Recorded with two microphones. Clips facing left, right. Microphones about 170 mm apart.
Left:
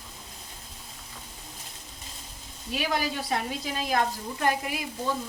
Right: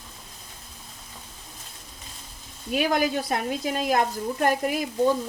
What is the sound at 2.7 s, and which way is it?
A woman's voice, 50° right (ahead or behind).